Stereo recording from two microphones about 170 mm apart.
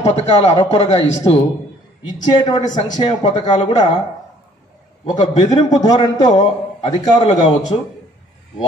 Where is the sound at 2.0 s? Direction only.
25° left (ahead or behind).